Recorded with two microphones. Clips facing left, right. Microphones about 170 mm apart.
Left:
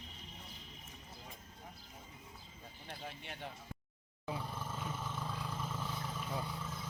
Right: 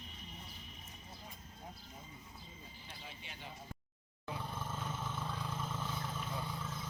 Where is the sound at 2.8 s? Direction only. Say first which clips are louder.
Left 8 dB; 55° left (ahead or behind).